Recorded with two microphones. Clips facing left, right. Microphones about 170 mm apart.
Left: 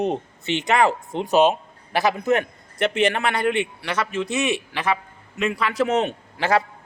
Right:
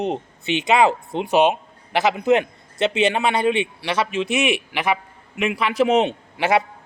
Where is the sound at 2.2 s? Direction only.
20° right (ahead or behind).